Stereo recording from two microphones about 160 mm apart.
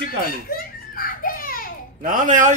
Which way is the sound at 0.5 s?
65° left (ahead or behind).